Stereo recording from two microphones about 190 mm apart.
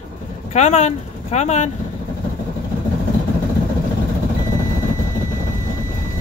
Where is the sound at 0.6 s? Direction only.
35° left (ahead or behind).